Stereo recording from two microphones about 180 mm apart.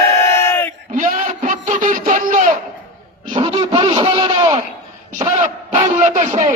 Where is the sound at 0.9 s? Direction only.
45° right (ahead or behind).